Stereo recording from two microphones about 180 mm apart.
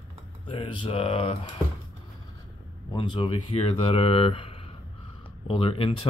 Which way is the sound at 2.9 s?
25° left (ahead or behind).